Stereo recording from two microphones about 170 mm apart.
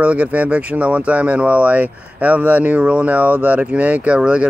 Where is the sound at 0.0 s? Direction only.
10° right (ahead or behind).